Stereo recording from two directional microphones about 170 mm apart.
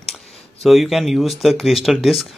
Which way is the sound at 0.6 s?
Centre (ahead or behind).